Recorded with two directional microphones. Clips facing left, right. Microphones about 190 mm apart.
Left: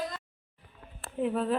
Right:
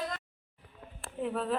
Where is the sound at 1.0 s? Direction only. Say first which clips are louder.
Left 4 dB; centre (ahead or behind).